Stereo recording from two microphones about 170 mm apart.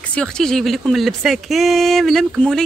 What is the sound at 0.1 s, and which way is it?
Speech, 5° left (ahead or behind).